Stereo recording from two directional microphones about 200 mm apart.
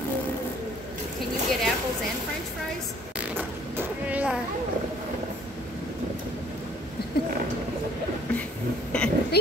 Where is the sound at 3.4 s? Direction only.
10° right (ahead or behind).